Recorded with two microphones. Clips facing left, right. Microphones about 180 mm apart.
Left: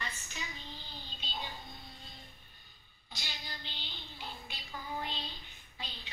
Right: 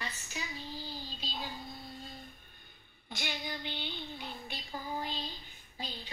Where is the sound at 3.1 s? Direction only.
60° right (ahead or behind).